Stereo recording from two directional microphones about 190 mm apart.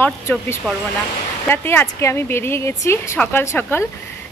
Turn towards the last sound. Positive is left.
turn(degrees=10)  # may be behind; listen again after turning